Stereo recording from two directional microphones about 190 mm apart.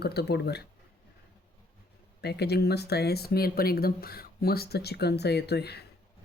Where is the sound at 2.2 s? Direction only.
60° left (ahead or behind).